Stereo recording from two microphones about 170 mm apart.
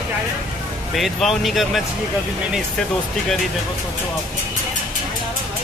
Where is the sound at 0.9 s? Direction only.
Centre (ahead or behind).